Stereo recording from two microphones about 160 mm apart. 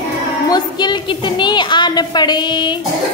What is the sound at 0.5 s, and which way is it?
A woman's voice, 25° left (ahead or behind).